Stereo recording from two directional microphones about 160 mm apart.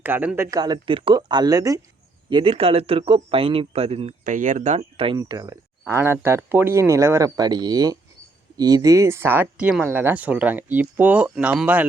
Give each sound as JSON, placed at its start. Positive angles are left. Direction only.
{"t": 0.0, "sound": "speech", "side_deg": -10}
{"t": 0.5, "sound": "speech", "side_deg": -25}
{"t": 2.3, "sound": "speech", "side_deg": -35}
{"t": 4.2, "sound": "speech", "side_deg": -55}
{"t": 4.8, "sound": "speech", "side_deg": -35}
{"t": 5.1, "sound": "speech", "side_deg": -20}